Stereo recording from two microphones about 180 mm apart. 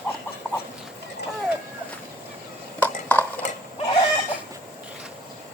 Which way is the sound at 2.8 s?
10° left (ahead or behind).